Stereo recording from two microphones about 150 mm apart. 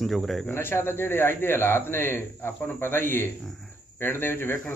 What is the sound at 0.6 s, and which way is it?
A man's voice, 15° left (ahead or behind).